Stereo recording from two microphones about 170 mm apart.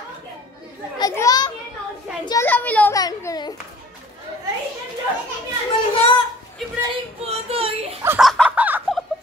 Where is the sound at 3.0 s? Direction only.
20° left (ahead or behind).